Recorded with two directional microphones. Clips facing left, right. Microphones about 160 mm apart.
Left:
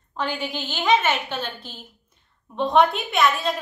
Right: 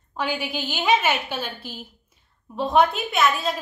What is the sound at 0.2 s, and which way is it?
A woman's voice, 10° right (ahead or behind).